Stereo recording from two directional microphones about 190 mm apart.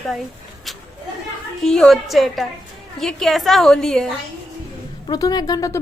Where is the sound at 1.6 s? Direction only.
5° left (ahead or behind).